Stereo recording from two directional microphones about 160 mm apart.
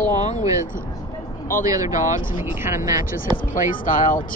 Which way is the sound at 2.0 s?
55° left (ahead or behind).